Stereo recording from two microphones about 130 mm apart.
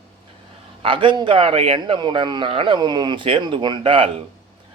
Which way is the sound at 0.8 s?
40° right (ahead or behind).